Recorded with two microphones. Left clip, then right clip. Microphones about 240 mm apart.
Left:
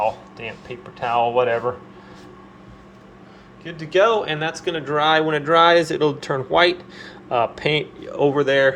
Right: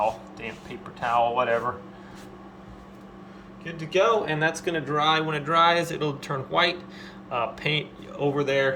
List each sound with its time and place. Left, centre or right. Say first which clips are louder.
0.9 s speech: left 4 dB; left
3.6 s a man's voice: left 6 dB; left; by 4.9 s centre
4.9 s speech: left 6 dB; centre